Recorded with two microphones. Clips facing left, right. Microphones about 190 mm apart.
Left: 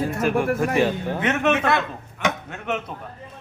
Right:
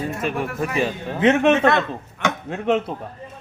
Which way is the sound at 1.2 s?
30° right (ahead or behind).